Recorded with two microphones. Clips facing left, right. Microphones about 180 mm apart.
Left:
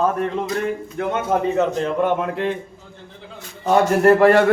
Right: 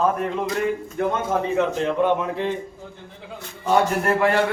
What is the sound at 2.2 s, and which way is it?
Speech, 65° left (ahead or behind).